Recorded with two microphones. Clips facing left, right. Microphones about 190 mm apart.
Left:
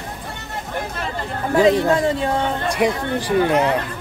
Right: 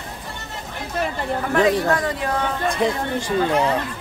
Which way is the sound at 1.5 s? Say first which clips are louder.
Left 4 dB; 25° left (ahead or behind).